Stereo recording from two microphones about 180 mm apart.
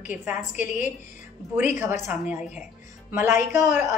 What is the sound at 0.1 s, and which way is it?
Speech, 10° right (ahead or behind).